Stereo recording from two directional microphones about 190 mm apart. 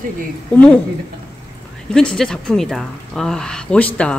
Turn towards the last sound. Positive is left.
turn(degrees=5)  # may be behind; listen again after turning